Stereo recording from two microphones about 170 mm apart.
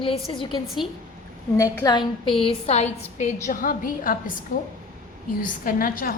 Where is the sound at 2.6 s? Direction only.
40° left (ahead or behind).